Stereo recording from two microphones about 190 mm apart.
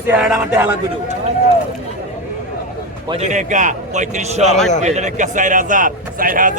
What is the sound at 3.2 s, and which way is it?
A man's voice, 40° right (ahead or behind).